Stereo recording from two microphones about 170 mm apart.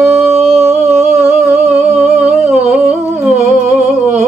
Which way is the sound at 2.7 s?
5° right (ahead or behind).